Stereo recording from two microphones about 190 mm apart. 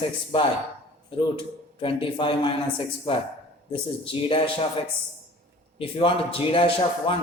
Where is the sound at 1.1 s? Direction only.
25° left (ahead or behind).